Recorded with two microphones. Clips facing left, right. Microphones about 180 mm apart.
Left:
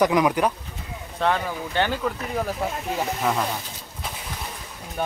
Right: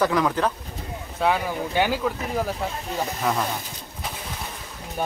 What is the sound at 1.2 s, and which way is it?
Speech, 10° right (ahead or behind).